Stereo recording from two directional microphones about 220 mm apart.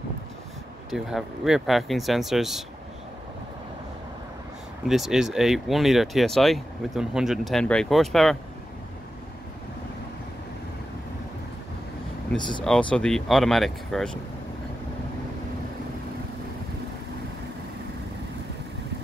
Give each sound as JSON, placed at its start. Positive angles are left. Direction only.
{"t": 0.8, "sound": "speech", "side_deg": 0}
{"t": 4.8, "sound": "speech", "side_deg": 0}
{"t": 12.4, "sound": "speech", "side_deg": 20}
{"t": 12.6, "sound": "speech", "side_deg": 5}